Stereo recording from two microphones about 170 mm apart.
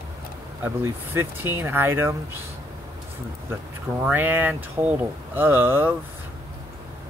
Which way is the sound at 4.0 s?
10° right (ahead or behind).